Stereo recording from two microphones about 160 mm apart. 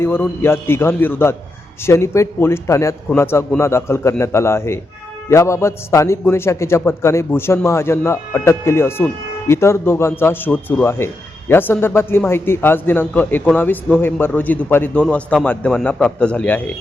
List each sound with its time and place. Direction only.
0.0 s a man's voice: 15° left (ahead or behind)